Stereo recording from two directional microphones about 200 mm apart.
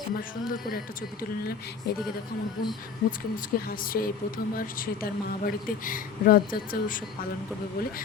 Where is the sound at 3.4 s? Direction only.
45° left (ahead or behind).